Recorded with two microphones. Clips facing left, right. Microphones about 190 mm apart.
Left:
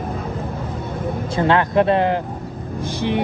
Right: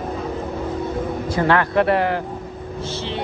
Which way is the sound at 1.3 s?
20° left (ahead or behind).